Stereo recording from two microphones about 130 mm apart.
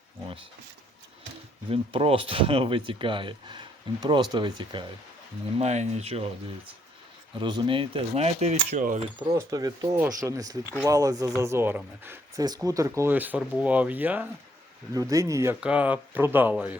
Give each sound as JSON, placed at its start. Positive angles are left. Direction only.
{"t": 1.7, "sound": "speech", "side_deg": -45}
{"t": 5.5, "sound": "speech", "side_deg": -60}
{"t": 7.3, "sound": "speech", "side_deg": -35}
{"t": 9.3, "sound": "speech", "side_deg": -30}
{"t": 12.4, "sound": "speech", "side_deg": -30}
{"t": 13.0, "sound": "speech", "side_deg": -15}
{"t": 14.9, "sound": "speech", "side_deg": -25}
{"t": 15.6, "sound": "speech", "side_deg": -10}